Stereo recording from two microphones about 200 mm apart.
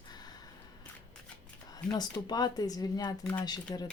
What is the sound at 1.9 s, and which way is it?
Speech, 20° left (ahead or behind).